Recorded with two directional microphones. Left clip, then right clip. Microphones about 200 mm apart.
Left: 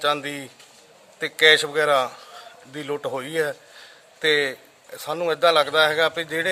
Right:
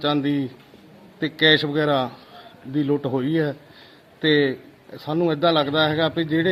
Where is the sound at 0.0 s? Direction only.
20° left (ahead or behind).